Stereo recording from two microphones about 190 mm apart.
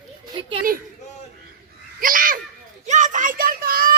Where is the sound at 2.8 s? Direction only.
40° right (ahead or behind).